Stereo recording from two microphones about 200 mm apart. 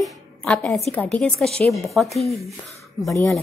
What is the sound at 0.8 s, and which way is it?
Speech, 5° left (ahead or behind).